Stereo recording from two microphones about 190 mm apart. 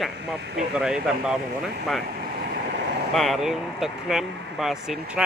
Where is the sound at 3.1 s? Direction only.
Centre (ahead or behind).